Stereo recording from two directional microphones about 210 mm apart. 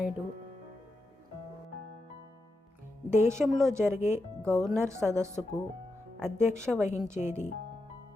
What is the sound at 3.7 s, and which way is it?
A woman's voice, 10° right (ahead or behind).